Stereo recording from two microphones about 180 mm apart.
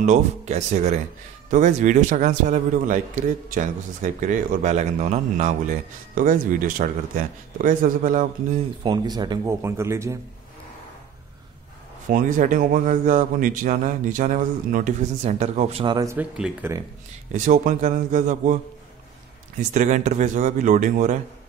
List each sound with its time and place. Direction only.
0.0 s a man's voice: 40° right (ahead or behind)
8.8 s speech: 25° right (ahead or behind)
12.1 s a man's voice: 45° right (ahead or behind); by 16.2 s 25° right (ahead or behind)
16.2 s speech: 5° right (ahead or behind)
17.3 s a man's voice: 45° right (ahead or behind)
19.7 s a man's voice: 40° right (ahead or behind)